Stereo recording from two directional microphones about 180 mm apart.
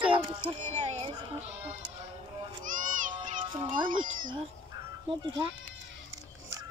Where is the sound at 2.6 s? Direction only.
45° right (ahead or behind).